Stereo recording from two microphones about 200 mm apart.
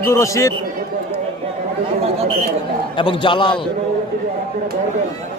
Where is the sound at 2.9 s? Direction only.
25° left (ahead or behind).